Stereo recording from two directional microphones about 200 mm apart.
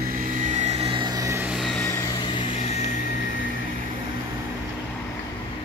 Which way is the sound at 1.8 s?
15° left (ahead or behind).